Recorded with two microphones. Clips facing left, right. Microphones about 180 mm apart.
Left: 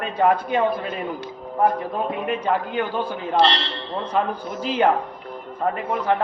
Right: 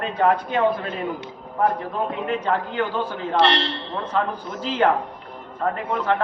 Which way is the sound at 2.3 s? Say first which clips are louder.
Left 1 dB; 15° left (ahead or behind).